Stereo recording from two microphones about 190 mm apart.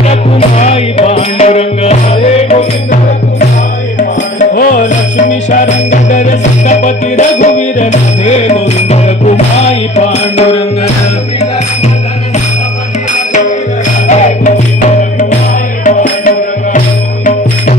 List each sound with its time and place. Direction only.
0.1 s music: 35° left (ahead or behind)
4.0 s music: 50° left (ahead or behind)
14.0 s music: 40° left (ahead or behind)
15.8 s music: 45° left (ahead or behind)